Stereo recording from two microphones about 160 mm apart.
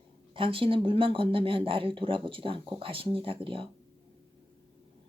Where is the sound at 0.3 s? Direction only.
35° right (ahead or behind).